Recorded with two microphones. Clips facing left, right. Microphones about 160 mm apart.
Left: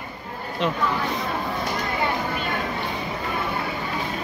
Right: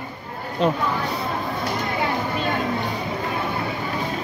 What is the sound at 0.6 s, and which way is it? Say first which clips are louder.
Speech: right 5 dB; 40° right (ahead or behind).